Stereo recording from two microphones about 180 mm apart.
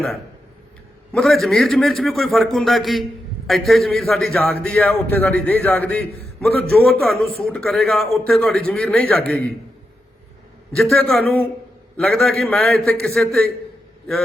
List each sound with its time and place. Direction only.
1.1 s a man's voice: centre (ahead or behind)
10.7 s a man's voice: 5° left (ahead or behind)